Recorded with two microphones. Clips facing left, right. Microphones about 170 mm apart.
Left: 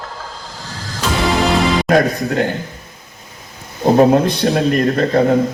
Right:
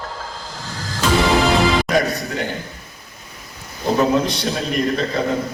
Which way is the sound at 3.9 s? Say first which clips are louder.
Left 6 dB; 55° left (ahead or behind).